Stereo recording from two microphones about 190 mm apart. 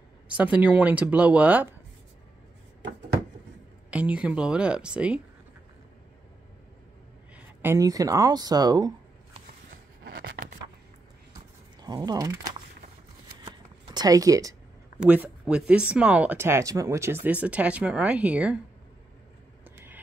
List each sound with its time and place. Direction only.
0.4 s speech: 10° right (ahead or behind)
3.9 s speech: 5° right (ahead or behind)
7.3 s speech: 15° right (ahead or behind)
11.8 s speech: 20° right (ahead or behind)
13.4 s shuffling cards: 25° right (ahead or behind)
15.0 s speech: 5° right (ahead or behind)
19.6 s vehicle: 10° right (ahead or behind)